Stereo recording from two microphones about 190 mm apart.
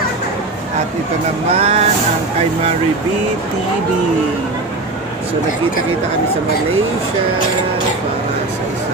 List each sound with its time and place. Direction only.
1.5 s speech: 35° right (ahead or behind)